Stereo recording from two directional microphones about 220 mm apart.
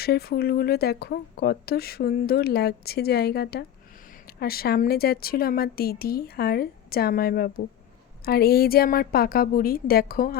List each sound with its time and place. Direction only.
0.0 s speech: 45° left (ahead or behind)